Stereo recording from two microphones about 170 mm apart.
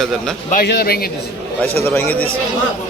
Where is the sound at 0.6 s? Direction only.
70° left (ahead or behind).